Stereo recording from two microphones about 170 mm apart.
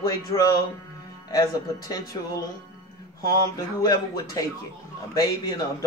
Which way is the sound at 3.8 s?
20° left (ahead or behind).